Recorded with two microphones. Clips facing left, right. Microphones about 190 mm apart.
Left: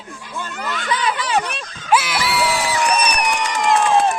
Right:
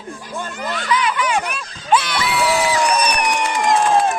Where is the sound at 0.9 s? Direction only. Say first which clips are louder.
Right 2 dB; 35° left (ahead or behind).